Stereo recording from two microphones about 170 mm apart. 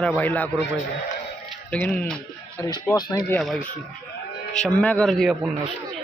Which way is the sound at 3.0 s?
25° left (ahead or behind).